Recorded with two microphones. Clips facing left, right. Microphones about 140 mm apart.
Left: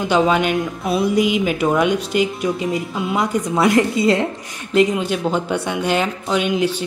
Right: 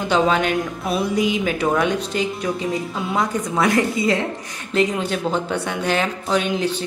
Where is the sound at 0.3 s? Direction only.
20° left (ahead or behind).